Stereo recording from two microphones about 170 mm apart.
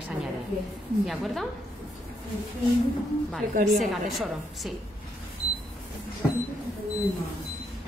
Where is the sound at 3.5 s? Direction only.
50° right (ahead or behind).